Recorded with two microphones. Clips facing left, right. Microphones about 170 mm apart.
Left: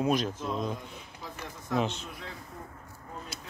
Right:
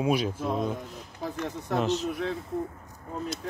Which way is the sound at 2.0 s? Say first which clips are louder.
Right 13 dB; 65° right (ahead or behind).